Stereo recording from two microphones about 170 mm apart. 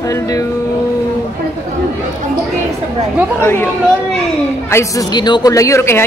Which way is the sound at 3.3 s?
15° left (ahead or behind).